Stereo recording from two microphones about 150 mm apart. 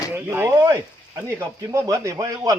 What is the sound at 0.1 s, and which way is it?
Speech, 15° right (ahead or behind).